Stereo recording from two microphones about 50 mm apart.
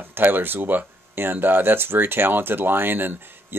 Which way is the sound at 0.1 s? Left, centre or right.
Right.